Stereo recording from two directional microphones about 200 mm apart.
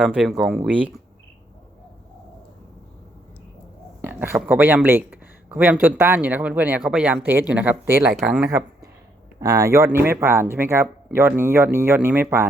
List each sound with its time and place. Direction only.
0.0 s speech: centre (ahead or behind)
4.0 s speech: 10° right (ahead or behind)
8.4 s speech: 15° right (ahead or behind)